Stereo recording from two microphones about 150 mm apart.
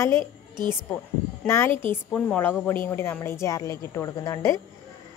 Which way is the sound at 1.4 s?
15° left (ahead or behind).